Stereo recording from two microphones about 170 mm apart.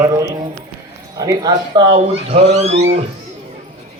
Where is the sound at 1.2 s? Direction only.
20° right (ahead or behind).